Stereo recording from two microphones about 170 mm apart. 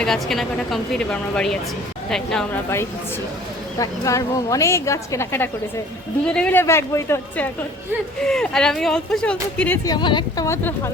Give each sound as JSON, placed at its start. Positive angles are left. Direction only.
{"t": 0.0, "sound": "speech", "side_deg": 0}
{"t": 3.8, "sound": "speech", "side_deg": 20}
{"t": 9.8, "sound": "a woman's voice", "side_deg": 25}